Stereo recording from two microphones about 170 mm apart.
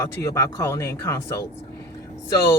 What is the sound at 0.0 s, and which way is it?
Speech, 20° left (ahead or behind).